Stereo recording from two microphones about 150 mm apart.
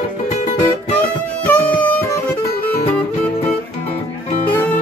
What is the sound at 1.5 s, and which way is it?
Music, 10° left (ahead or behind).